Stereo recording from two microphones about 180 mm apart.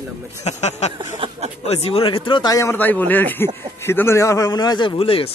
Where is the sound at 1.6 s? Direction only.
35° left (ahead or behind).